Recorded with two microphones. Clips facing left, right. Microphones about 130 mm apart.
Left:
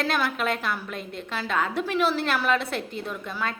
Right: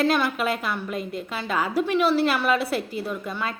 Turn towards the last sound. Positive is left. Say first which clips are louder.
# right 2 dB
turn(degrees=-5)  # may be behind; listen again after turning